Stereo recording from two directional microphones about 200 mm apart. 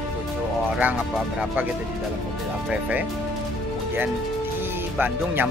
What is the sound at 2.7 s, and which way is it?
Speech, 5° right (ahead or behind).